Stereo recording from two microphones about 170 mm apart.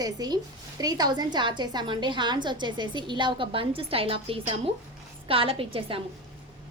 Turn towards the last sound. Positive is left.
turn(degrees=-35)  # may be behind; listen again after turning